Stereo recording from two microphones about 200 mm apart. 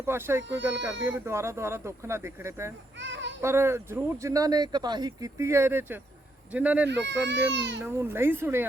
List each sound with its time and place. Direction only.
0.0 s speech: 10° right (ahead or behind)
3.0 s a child's voice: 65° right (ahead or behind)
3.4 s speech: 15° right (ahead or behind)
7.3 s speech: 60° right (ahead or behind)
7.8 s speech: 10° right (ahead or behind)